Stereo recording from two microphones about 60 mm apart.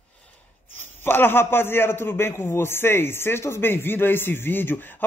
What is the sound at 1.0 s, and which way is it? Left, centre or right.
A man's voice, left.